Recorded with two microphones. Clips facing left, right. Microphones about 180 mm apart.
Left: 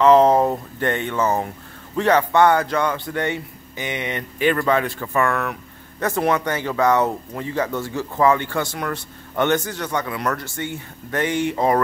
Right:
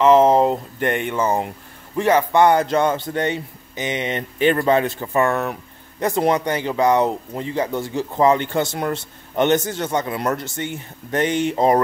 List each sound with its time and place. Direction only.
0.0 s speech: 10° right (ahead or behind)